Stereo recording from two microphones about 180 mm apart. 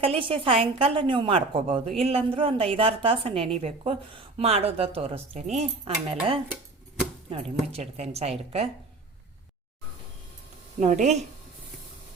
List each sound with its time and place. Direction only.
0.0 s a woman's voice: 30° right (ahead or behind)
10.8 s a woman's voice: 40° right (ahead or behind)